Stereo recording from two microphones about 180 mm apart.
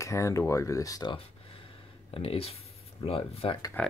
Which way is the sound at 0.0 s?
15° left (ahead or behind).